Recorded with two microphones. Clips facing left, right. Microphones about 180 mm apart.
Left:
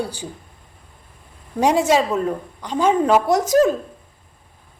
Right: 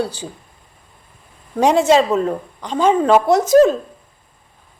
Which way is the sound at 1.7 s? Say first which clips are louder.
Right 4 dB; 10° left (ahead or behind).